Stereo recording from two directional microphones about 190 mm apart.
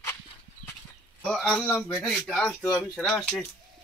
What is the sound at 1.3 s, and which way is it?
Speech, 5° left (ahead or behind).